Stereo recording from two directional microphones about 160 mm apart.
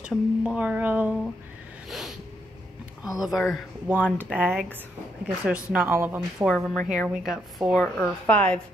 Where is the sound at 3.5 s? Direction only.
5° right (ahead or behind).